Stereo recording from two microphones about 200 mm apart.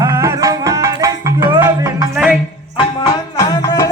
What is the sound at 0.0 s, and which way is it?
Music, 15° right (ahead or behind).